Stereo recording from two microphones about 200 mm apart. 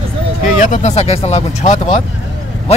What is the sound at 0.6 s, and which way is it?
Speech, 35° left (ahead or behind).